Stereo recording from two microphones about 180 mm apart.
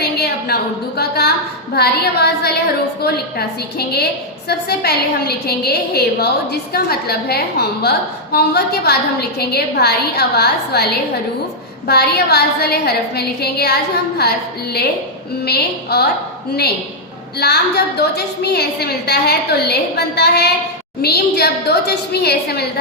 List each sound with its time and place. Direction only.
0.0 s a woman's voice: 60° left (ahead or behind)
11.9 s a woman's voice: 65° left (ahead or behind)
17.3 s a woman's voice: 65° left (ahead or behind)